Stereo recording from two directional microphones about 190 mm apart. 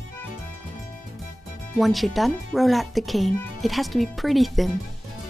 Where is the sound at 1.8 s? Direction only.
Centre (ahead or behind).